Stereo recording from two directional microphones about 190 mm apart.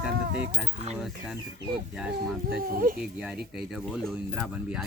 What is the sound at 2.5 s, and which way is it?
Speech, 55° right (ahead or behind).